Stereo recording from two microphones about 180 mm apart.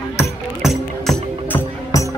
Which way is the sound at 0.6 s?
Centre (ahead or behind).